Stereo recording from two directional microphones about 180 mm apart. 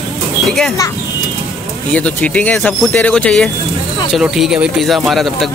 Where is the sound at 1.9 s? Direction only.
5° left (ahead or behind).